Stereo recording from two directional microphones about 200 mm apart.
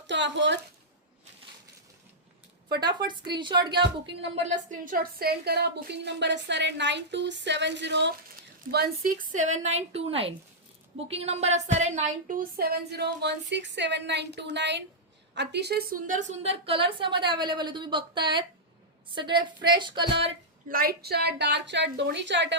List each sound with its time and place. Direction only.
0.1 s a woman's voice: 65° right (ahead or behind)
3.1 s a woman's voice: 25° right (ahead or behind)
4.4 s a woman's voice: 40° right (ahead or behind); by 8.1 s 60° right (ahead or behind)
8.7 s a woman's voice: 50° right (ahead or behind); by 20.1 s 25° right (ahead or behind)
20.7 s a woman's voice: 45° right (ahead or behind); by 22.5 s 60° right (ahead or behind)